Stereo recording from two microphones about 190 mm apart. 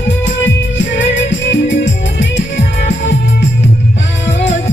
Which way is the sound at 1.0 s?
70° left (ahead or behind).